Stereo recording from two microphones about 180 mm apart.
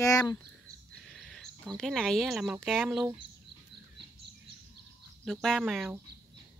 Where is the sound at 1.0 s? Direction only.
Centre (ahead or behind).